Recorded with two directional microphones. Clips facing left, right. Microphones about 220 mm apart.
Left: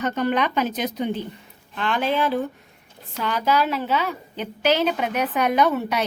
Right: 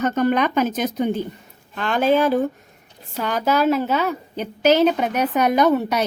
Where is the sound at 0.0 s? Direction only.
45° right (ahead or behind).